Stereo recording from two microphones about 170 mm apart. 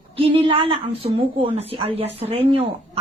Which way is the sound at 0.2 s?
35° right (ahead or behind).